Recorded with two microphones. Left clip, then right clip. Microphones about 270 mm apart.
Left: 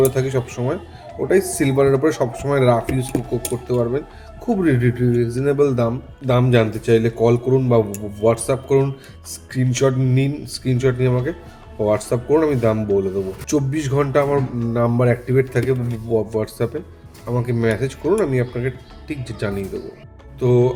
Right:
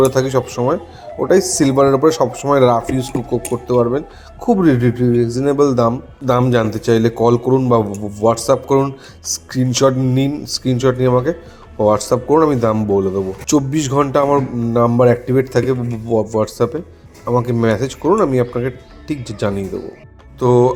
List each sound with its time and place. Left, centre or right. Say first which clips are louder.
0.1 s speech: right 6 dB; centre